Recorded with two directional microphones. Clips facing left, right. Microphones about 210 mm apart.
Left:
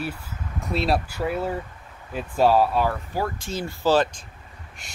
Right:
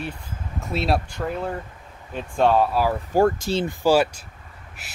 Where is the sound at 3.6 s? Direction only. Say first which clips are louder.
Right 1 dB; 10° right (ahead or behind).